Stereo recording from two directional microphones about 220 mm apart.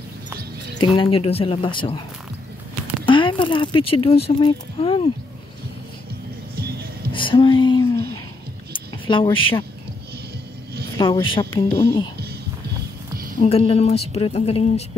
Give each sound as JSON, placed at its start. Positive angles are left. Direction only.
{"t": 0.9, "sound": "speech", "side_deg": 25}
{"t": 3.1, "sound": "speech", "side_deg": 20}
{"t": 6.5, "sound": "music", "side_deg": -45}
{"t": 7.1, "sound": "a sound", "side_deg": 20}
{"t": 9.0, "sound": "speech", "side_deg": 25}
{"t": 11.0, "sound": "speech", "side_deg": 20}
{"t": 13.4, "sound": "speech", "side_deg": 25}